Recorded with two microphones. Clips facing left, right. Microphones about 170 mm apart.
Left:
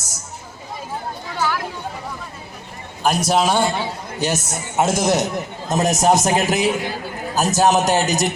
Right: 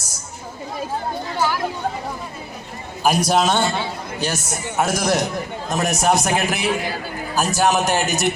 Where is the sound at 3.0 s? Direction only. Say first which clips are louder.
Even; centre (ahead or behind); by 8.0 s 20° left (ahead or behind).